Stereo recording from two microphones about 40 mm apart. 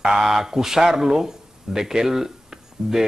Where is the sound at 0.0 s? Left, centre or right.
Centre.